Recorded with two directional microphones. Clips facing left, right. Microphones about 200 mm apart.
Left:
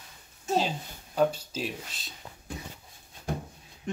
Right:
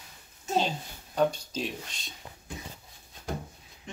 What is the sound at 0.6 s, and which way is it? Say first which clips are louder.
Speech: right 1 dB; 5° left (ahead or behind).